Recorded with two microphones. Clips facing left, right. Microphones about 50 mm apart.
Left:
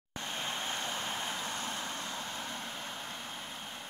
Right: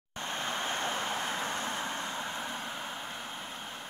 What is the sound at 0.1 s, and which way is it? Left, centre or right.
Vehicle, right.